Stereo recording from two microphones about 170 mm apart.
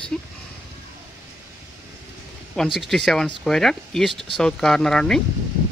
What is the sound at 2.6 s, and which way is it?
Speech, centre (ahead or behind).